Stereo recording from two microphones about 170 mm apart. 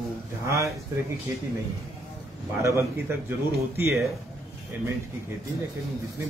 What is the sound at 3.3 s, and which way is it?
Speech, 15° right (ahead or behind).